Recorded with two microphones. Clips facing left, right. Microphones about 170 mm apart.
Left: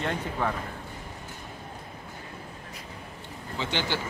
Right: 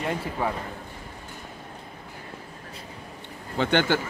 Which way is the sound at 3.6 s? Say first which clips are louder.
Right 8 dB; 55° right (ahead or behind).